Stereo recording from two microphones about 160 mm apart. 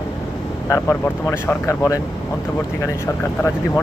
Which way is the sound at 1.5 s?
15° left (ahead or behind).